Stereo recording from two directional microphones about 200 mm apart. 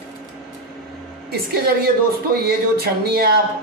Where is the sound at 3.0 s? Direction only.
50° right (ahead or behind).